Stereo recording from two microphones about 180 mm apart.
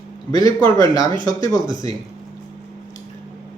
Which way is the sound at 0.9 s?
20° left (ahead or behind).